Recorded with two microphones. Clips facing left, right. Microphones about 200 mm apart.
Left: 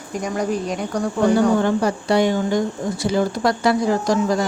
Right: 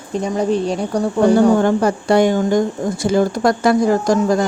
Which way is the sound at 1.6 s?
50° right (ahead or behind).